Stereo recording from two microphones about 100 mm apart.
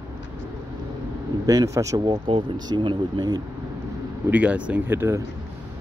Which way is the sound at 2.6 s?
50° right (ahead or behind).